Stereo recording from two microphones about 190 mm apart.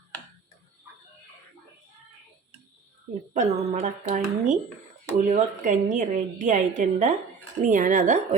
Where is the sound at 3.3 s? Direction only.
40° right (ahead or behind).